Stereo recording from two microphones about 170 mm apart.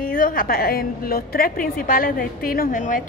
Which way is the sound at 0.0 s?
55° left (ahead or behind).